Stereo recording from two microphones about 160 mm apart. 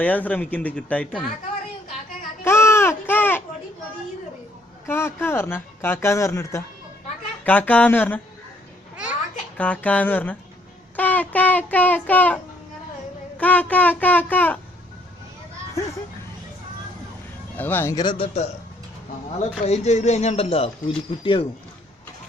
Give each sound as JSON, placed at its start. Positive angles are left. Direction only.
{"t": 0.0, "sound": "speech", "side_deg": 10}
{"t": 2.4, "sound": "a sound", "side_deg": 15}
{"t": 4.9, "sound": "speech", "side_deg": 15}
{"t": 9.6, "sound": "speech", "side_deg": 10}
{"t": 13.4, "sound": "speech", "side_deg": 10}
{"t": 17.6, "sound": "speech", "side_deg": 15}
{"t": 18.0, "sound": "speech", "side_deg": 35}